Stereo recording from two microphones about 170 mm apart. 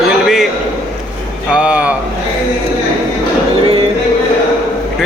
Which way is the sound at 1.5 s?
5° right (ahead or behind).